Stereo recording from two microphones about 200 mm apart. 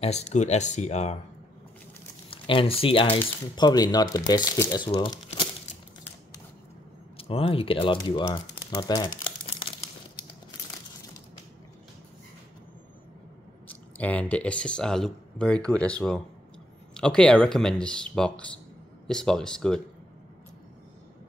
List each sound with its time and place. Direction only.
0.0 s speech: 35° left (ahead or behind)
2.3 s speech: 25° left (ahead or behind)
7.2 s speech: 30° left (ahead or behind)
8.7 s crumpling: 20° left (ahead or behind)
13.7 s speech: 5° left (ahead or behind)